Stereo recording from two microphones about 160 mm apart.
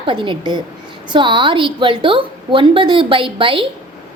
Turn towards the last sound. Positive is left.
turn(degrees=-35)  # may be behind; listen again after turning